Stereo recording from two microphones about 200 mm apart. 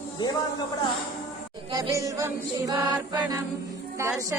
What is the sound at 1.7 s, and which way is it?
Music, 15° right (ahead or behind).